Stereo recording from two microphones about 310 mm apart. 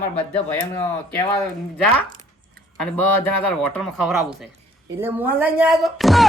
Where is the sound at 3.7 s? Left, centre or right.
Centre.